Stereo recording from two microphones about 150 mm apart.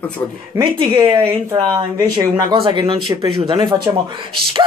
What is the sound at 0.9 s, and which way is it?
Speech, 15° right (ahead or behind).